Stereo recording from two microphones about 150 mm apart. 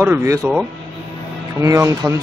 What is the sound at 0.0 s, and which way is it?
Speech, 15° right (ahead or behind).